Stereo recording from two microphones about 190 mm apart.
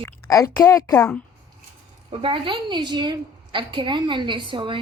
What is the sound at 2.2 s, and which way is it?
A woman's voice, 25° right (ahead or behind).